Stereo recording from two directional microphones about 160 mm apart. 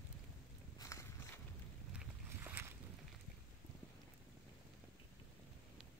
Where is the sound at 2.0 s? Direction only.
15° right (ahead or behind).